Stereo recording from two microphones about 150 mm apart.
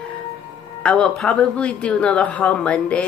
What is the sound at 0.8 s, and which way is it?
Speech, 5° left (ahead or behind).